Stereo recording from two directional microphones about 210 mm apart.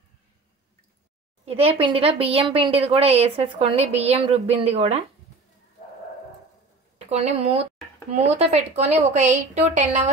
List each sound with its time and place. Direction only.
1.4 s speech: 30° right (ahead or behind)
7.1 s a woman's voice: 30° right (ahead or behind)